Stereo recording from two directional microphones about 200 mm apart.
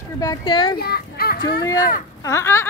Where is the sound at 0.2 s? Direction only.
20° left (ahead or behind).